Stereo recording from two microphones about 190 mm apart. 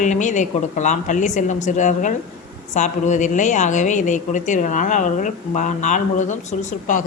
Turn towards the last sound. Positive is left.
turn(degrees=40)  # may be behind; listen again after turning